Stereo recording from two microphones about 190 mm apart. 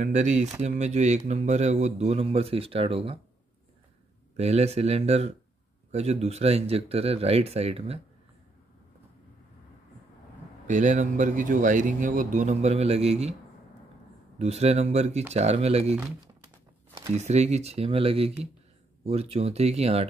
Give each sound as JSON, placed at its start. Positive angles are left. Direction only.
{"t": 0.0, "sound": "speech", "side_deg": -40}
{"t": 4.4, "sound": "speech", "side_deg": -35}
{"t": 10.7, "sound": "speech", "side_deg": -40}
{"t": 14.4, "sound": "speech", "side_deg": -35}
{"t": 17.1, "sound": "speech", "side_deg": -35}